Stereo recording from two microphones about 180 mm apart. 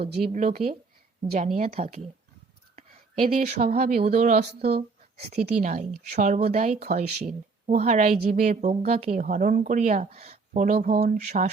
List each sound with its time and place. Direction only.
0.3 s speech: 45° right (ahead or behind)
2.7 s a sound: 40° right (ahead or behind)
3.7 s speech: 50° right (ahead or behind)